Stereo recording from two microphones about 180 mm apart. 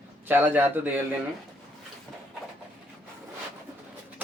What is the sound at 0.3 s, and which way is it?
Speech, 10° right (ahead or behind).